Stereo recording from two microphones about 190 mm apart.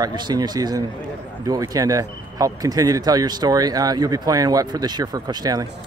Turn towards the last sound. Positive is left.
turn(degrees=-20)  # may be behind; listen again after turning